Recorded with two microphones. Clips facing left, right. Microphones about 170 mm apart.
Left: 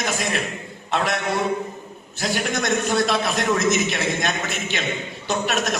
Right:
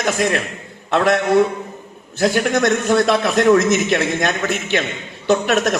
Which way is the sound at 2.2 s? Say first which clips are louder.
Right 8 dB; 55° right (ahead or behind).